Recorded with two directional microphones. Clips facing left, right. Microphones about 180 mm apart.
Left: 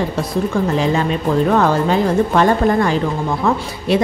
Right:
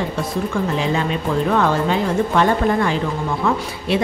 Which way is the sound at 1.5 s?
40° left (ahead or behind).